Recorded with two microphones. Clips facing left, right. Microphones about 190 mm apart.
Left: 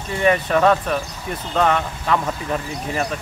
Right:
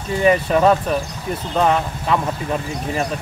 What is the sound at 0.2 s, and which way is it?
Speech, 5° right (ahead or behind).